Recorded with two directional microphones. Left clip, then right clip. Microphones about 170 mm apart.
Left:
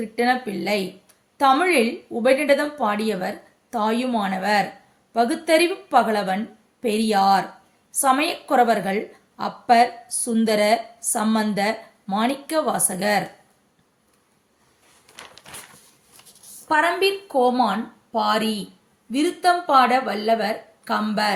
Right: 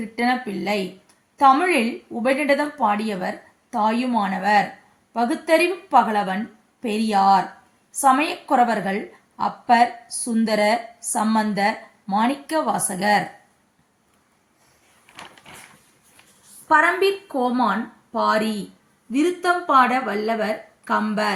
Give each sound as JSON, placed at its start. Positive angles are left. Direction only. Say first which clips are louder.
{"t": 0.0, "sound": "a woman's voice", "louder": "left 1 dB", "side_deg": 15}
{"t": 16.6, "sound": "speech", "louder": "right 2 dB", "side_deg": 15}